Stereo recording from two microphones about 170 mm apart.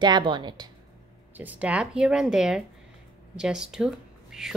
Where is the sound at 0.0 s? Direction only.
25° right (ahead or behind).